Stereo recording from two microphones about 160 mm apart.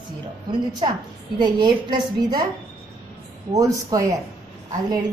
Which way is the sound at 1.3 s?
30° right (ahead or behind).